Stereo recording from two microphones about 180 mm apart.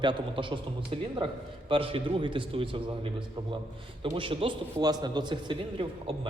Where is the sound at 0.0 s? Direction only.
25° right (ahead or behind).